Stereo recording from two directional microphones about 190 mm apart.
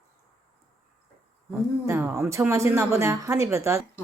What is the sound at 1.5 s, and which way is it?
Speech, 15° right (ahead or behind).